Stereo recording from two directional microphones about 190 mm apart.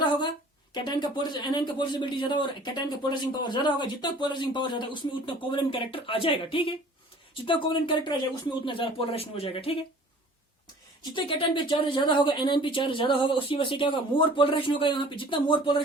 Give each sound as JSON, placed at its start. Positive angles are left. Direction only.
{"t": 0.0, "sound": "a sound", "side_deg": 25}
{"t": 0.7, "sound": "speech", "side_deg": 25}
{"t": 11.1, "sound": "speech", "side_deg": 25}